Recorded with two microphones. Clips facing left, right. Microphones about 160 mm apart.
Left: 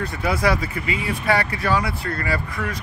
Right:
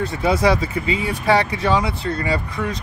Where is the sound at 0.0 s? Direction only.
25° right (ahead or behind).